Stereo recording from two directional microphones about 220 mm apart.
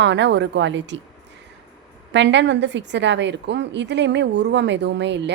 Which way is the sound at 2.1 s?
55° right (ahead or behind).